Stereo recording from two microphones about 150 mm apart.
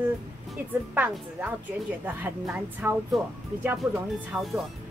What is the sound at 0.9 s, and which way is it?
A woman's voice, 10° right (ahead or behind).